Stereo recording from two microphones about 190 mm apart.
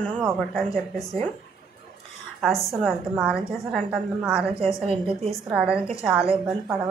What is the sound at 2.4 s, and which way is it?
A woman's voice, centre (ahead or behind).